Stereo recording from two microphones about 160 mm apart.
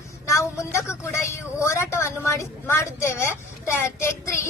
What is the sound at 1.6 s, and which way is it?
Speech, 15° left (ahead or behind).